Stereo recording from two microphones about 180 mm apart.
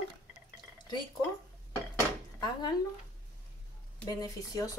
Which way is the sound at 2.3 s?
20° left (ahead or behind).